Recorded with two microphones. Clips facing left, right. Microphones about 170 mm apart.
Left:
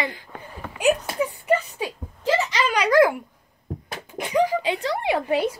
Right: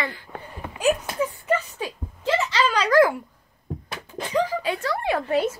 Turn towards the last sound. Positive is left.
turn(degrees=15)  # may be behind; listen again after turning